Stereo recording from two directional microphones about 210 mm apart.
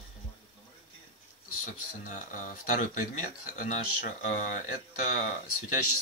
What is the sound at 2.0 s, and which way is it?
Speech, 40° left (ahead or behind).